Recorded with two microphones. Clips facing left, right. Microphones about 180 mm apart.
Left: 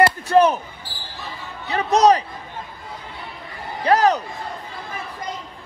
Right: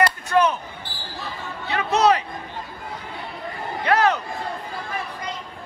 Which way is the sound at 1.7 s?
35° left (ahead or behind).